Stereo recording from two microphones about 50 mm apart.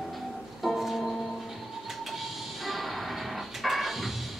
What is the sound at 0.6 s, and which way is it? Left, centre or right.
Music, centre.